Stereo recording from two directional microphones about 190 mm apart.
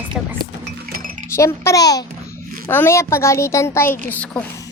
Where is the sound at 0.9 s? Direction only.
45° right (ahead or behind).